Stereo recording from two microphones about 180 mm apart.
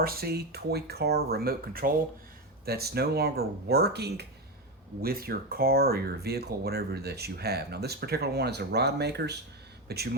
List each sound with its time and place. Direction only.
0.0 s speech: 60° right (ahead or behind)